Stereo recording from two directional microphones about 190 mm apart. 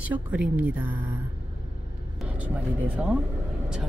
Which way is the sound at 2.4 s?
5° right (ahead or behind).